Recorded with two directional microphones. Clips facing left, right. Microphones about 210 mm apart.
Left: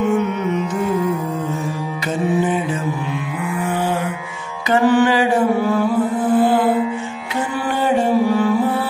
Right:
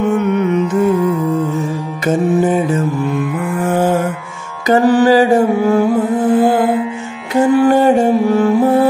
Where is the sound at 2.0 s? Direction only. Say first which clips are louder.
Right 6 dB; 45° right (ahead or behind).